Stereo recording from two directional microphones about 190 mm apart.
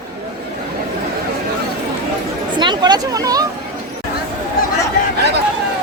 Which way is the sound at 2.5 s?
25° right (ahead or behind).